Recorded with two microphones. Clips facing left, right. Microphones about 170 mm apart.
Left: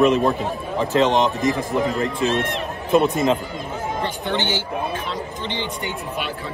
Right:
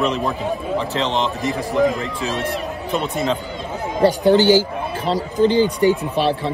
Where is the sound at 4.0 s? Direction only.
35° right (ahead or behind).